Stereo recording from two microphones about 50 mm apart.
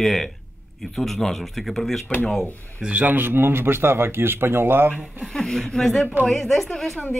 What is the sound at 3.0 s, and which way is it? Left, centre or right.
A man's voice, right.